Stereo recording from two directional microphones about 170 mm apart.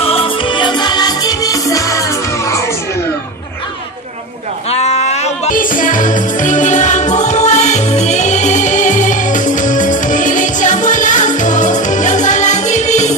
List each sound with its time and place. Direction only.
0.0 s music: 35° left (ahead or behind); by 2.6 s 15° left (ahead or behind)
4.6 s music: 40° left (ahead or behind)